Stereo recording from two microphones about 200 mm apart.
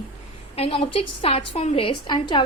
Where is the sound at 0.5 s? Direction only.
30° left (ahead or behind).